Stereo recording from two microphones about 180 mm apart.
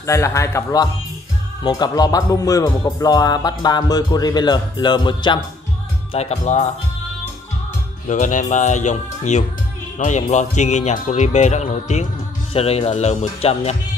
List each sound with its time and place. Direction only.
0.0 s speech: 15° left (ahead or behind)
6.1 s speech: 35° left (ahead or behind)
8.1 s speech: 45° left (ahead or behind)